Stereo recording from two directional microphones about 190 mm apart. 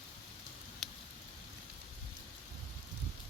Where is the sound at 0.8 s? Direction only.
Centre (ahead or behind).